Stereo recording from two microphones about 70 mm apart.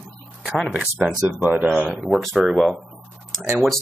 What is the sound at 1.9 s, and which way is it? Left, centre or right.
Speech, centre.